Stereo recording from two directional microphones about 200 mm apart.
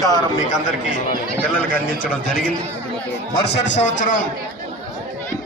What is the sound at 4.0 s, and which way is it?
Speech, 40° left (ahead or behind).